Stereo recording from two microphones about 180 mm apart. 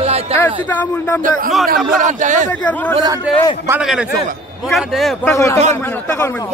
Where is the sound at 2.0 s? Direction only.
45° right (ahead or behind).